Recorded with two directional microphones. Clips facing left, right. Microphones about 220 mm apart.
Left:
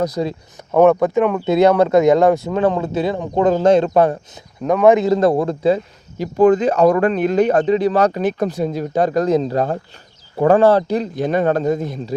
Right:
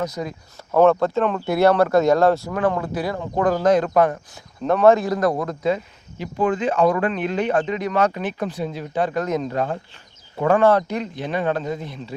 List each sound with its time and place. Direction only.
0.0 s speech: 35° left (ahead or behind)
0.7 s speech: 15° left (ahead or behind)
4.6 s speech: 10° left (ahead or behind); by 12.1 s 45° left (ahead or behind)